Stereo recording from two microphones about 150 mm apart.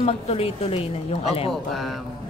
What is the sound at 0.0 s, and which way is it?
A woman's voice, 40° left (ahead or behind).